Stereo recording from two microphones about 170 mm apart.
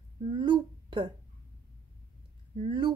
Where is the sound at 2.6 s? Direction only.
25° right (ahead or behind).